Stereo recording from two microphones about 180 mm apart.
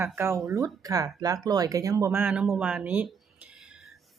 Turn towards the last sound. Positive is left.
turn(degrees=-5)  # may be behind; listen again after turning